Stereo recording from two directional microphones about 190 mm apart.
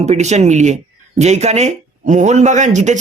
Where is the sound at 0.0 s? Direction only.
35° right (ahead or behind).